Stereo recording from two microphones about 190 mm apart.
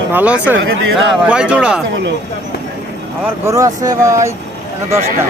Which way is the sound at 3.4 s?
15° right (ahead or behind).